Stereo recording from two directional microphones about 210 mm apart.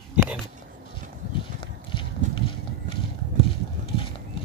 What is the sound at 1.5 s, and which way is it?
Horse, 25° left (ahead or behind).